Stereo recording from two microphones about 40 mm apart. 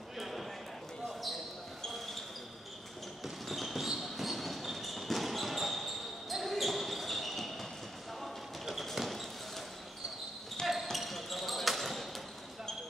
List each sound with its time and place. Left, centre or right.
0.2 s a sound: centre
1.9 s basketball bounce: centre
3.4 s basketball bounce: centre
8.2 s a sound: centre
8.9 s basketball bounce: centre
10.7 s basketball bounce: centre